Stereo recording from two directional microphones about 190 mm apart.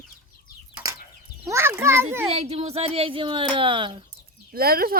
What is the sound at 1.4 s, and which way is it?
Speech, 15° right (ahead or behind).